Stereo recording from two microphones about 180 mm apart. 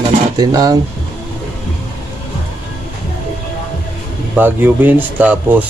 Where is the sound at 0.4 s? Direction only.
20° right (ahead or behind).